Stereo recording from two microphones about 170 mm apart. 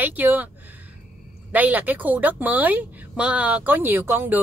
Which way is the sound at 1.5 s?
10° right (ahead or behind).